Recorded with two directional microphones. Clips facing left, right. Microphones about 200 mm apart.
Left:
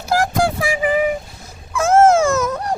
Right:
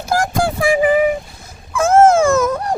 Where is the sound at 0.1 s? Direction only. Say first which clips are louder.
Even; 50° right (ahead or behind).